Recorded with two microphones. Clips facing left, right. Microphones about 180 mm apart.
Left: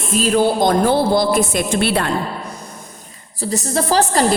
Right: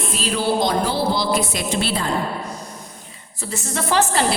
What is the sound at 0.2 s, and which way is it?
A woman's voice, 50° left (ahead or behind).